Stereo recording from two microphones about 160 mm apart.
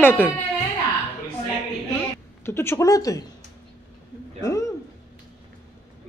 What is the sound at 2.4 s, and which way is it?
Speech, 15° left (ahead or behind).